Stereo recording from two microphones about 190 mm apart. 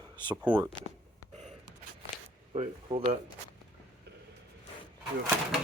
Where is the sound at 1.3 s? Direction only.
35° right (ahead or behind).